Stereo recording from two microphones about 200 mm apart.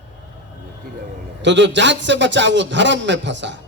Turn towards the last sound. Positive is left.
turn(degrees=-65)  # may be behind; listen again after turning